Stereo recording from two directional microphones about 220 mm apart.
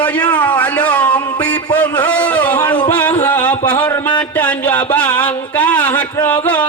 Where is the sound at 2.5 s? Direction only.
20° left (ahead or behind).